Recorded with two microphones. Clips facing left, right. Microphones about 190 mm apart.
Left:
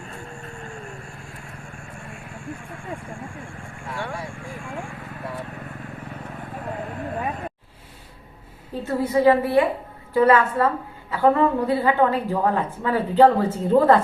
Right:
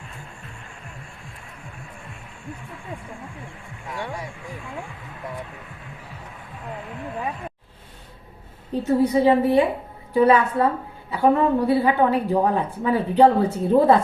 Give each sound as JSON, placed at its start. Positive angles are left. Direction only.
{"t": 0.1, "sound": "vehicle", "side_deg": 35}
{"t": 2.3, "sound": "speech", "side_deg": 50}
{"t": 3.8, "sound": "speech", "side_deg": -20}
{"t": 6.0, "sound": "vehicle", "side_deg": 55}
{"t": 8.7, "sound": "a woman's voice", "side_deg": -20}